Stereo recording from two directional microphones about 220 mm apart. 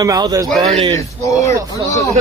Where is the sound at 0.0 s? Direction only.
15° right (ahead or behind).